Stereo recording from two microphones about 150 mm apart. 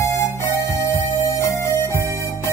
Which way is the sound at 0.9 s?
20° left (ahead or behind).